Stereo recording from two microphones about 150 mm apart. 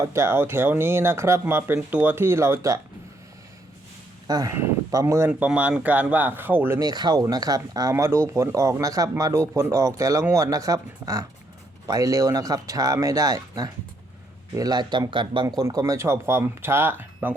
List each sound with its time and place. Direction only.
0.0 s speech: 20° right (ahead or behind)
4.3 s speech: 25° right (ahead or behind)
5.3 s speech: 10° right (ahead or behind)
6.7 s speech: 25° right (ahead or behind)
15.4 s speech: 20° right (ahead or behind)